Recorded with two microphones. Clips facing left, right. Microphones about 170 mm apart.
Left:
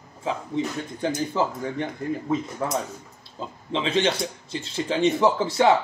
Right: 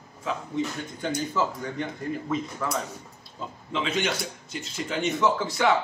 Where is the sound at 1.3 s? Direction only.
30° left (ahead or behind).